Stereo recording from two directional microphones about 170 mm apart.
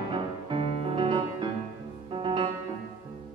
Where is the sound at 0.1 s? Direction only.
30° right (ahead or behind).